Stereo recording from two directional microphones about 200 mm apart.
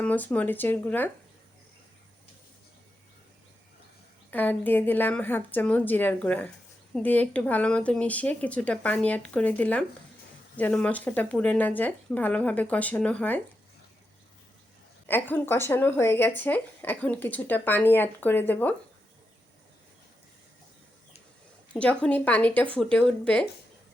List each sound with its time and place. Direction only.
0.0 s speech: 5° left (ahead or behind)
4.3 s speech: 10° left (ahead or behind)
15.0 s speech: 10° left (ahead or behind)
21.7 s speech: 5° left (ahead or behind)